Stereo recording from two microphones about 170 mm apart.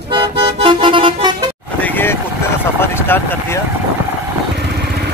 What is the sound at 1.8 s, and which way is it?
Vehicle, 10° left (ahead or behind).